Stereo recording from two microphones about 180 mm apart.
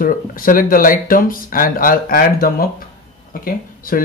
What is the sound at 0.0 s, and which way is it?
Speech, 50° left (ahead or behind).